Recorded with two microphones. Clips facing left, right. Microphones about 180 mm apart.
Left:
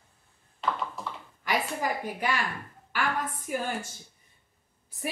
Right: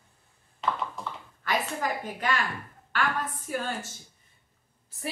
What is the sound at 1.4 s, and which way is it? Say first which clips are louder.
Speech: even; 10° left (ahead or behind).